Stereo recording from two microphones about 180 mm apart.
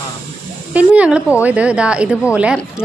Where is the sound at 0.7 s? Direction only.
10° right (ahead or behind).